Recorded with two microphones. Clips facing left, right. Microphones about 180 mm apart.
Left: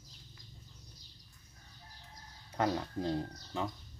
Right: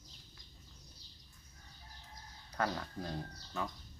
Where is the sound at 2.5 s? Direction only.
25° left (ahead or behind).